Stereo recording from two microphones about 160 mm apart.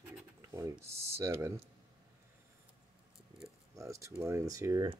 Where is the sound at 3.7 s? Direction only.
20° right (ahead or behind).